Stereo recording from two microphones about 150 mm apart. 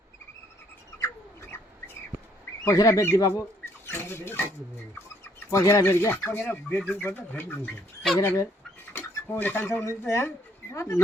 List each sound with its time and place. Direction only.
0.9 s bird: 20° left (ahead or behind)
2.6 s speech: 20° left (ahead or behind)